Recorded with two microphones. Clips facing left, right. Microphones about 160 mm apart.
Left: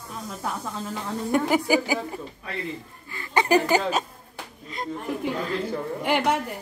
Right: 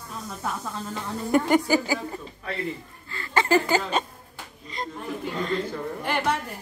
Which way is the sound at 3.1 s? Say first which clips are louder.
Left 1 dB; 15° left (ahead or behind).